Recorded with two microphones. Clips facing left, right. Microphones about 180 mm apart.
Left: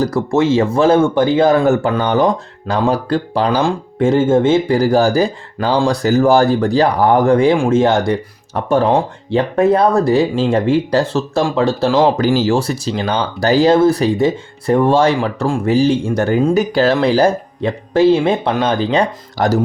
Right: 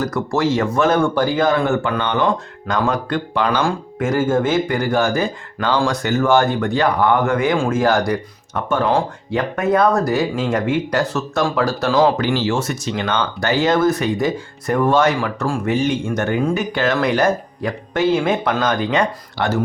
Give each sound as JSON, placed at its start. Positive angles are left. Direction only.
{"t": 0.0, "sound": "speech", "side_deg": 30}
{"t": 1.5, "sound": "speech", "side_deg": 40}
{"t": 12.1, "sound": "speech", "side_deg": 40}